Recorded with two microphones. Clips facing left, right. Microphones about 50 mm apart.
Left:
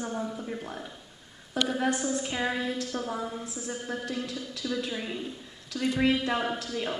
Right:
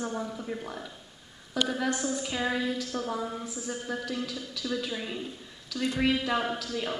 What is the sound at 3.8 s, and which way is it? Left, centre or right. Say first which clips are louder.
Speech: even; left.